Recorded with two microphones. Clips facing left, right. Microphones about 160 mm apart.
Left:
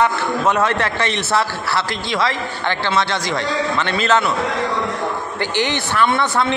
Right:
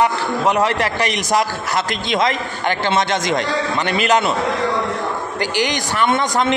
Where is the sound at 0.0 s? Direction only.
15° right (ahead or behind).